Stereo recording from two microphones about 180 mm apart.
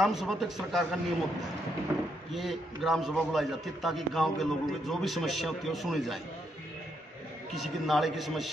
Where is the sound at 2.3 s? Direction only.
Centre (ahead or behind).